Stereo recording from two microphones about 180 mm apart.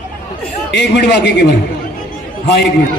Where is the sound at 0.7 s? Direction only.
70° left (ahead or behind).